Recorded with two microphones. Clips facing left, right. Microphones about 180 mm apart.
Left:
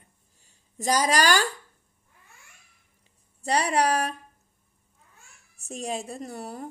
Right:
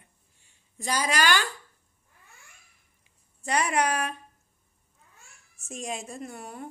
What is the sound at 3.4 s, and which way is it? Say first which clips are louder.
Speech: left 2 dB; 35° left (ahead or behind).